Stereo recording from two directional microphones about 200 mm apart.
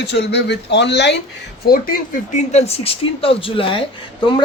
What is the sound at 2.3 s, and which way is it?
Speech, 30° left (ahead or behind).